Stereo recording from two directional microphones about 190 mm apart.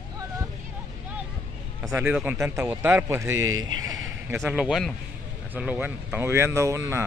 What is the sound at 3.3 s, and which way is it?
Speech, 90° right.